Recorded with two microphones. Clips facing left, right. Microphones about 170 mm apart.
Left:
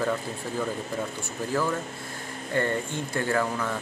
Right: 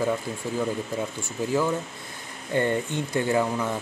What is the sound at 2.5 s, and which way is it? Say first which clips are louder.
Speech: right 3 dB; 20° right (ahead or behind).